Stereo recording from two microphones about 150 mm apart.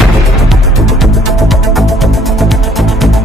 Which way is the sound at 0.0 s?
Centre (ahead or behind).